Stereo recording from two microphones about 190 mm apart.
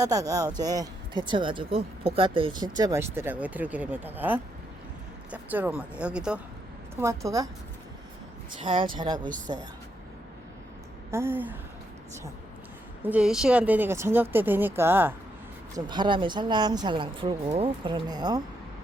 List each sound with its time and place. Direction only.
0.0 s speech: 20° right (ahead or behind)
8.6 s speech: 25° right (ahead or behind)
11.1 s speech: 10° right (ahead or behind)
13.0 s speech: 5° right (ahead or behind)
15.7 s speech: 25° right (ahead or behind)